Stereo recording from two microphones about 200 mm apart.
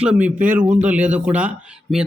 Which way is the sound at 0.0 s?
5° right (ahead or behind).